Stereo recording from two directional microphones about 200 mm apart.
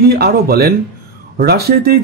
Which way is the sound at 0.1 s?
50° right (ahead or behind).